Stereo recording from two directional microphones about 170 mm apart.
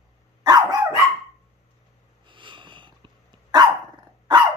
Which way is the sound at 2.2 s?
30° right (ahead or behind).